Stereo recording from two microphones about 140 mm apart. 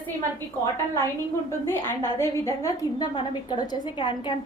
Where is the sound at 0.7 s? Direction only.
20° left (ahead or behind).